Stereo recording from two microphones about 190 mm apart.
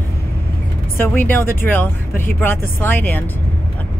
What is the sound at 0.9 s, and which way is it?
Speech, 10° left (ahead or behind).